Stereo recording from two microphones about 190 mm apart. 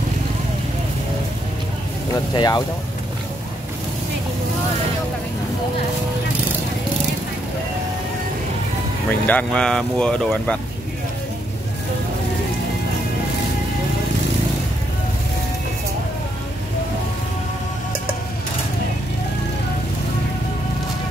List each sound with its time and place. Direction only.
2.3 s speech: 20° left (ahead or behind)
9.2 s speech: 10° left (ahead or behind)